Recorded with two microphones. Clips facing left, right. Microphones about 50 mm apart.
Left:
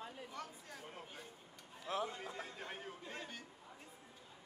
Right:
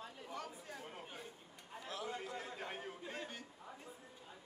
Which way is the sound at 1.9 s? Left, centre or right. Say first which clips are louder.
Left 7 dB; left.